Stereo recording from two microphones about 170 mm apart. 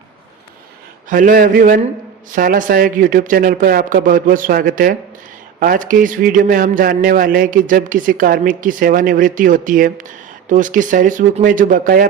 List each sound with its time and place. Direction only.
1.1 s a man's voice: 55° right (ahead or behind)